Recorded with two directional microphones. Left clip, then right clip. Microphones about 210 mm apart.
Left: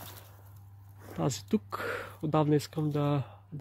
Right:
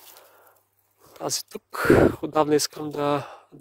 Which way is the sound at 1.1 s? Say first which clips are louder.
Right 2 dB; 35° right (ahead or behind).